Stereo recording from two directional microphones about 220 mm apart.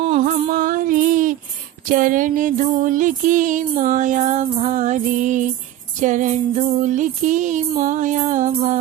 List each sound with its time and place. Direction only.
0.0 s music: 30° right (ahead or behind)